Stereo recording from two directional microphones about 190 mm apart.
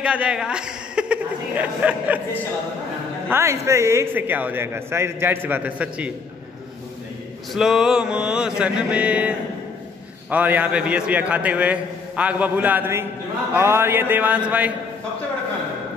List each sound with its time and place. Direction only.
0.0 s a man's voice: 5° right (ahead or behind)
3.3 s a man's voice: 15° right (ahead or behind)
7.5 s mantra: centre (ahead or behind)
10.3 s a man's voice: 10° right (ahead or behind)